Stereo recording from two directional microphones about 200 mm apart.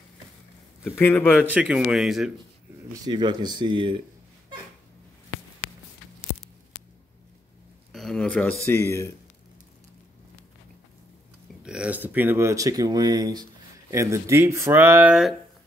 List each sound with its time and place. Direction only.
0.8 s speech: 10° left (ahead or behind)
1.5 s speech: 5° right (ahead or behind)
2.9 s speech: 20° right (ahead or behind)
7.9 s speech: centre (ahead or behind)
11.6 s speech: 5° right (ahead or behind)